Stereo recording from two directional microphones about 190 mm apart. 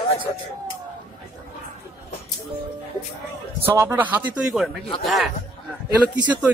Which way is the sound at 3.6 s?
15° right (ahead or behind).